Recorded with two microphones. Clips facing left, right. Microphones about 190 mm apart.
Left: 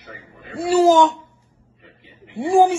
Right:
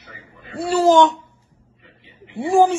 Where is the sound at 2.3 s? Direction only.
10° left (ahead or behind).